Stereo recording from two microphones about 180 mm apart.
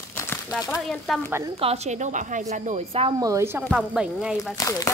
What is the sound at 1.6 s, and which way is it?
A woman's voice, 35° right (ahead or behind).